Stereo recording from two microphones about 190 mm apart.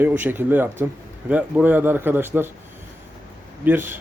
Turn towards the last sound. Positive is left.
turn(degrees=-10)  # may be behind; listen again after turning